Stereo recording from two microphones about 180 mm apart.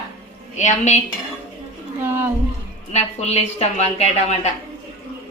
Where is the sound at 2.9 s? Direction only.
40° left (ahead or behind).